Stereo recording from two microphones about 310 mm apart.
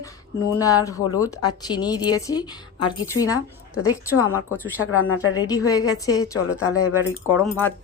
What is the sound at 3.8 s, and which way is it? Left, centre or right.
Speech, left.